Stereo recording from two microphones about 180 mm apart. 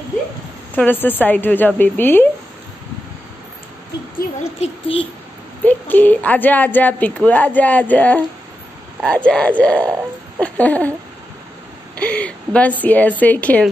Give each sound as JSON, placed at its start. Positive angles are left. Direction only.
{"t": 0.7, "sound": "a woman's voice", "side_deg": 10}
{"t": 4.4, "sound": "a child's voice", "side_deg": 35}
{"t": 5.6, "sound": "a woman's voice", "side_deg": 10}
{"t": 12.0, "sound": "a woman's voice", "side_deg": 5}